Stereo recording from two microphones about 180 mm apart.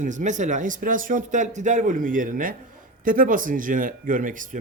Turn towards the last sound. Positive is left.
turn(degrees=-45)  # may be behind; listen again after turning